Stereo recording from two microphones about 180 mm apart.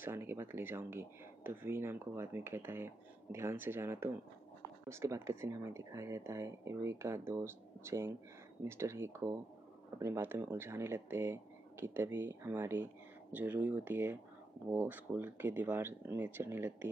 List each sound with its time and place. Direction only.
0.0 s speech: 15° right (ahead or behind)